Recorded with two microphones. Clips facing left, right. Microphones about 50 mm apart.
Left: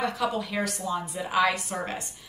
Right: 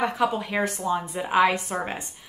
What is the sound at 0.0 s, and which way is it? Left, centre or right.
A woman's voice, right.